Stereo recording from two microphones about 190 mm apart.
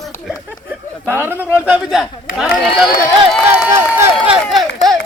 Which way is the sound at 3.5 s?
10° right (ahead or behind).